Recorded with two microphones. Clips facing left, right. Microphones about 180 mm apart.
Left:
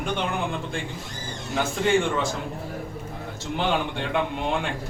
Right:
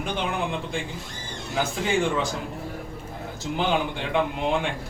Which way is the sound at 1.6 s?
Centre (ahead or behind).